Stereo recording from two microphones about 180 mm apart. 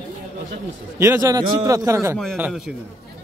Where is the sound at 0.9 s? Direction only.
15° right (ahead or behind).